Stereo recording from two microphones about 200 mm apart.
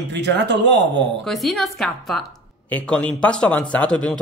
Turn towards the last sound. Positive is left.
turn(degrees=5)  # may be behind; listen again after turning